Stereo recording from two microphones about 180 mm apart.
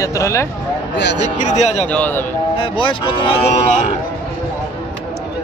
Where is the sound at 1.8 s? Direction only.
10° left (ahead or behind).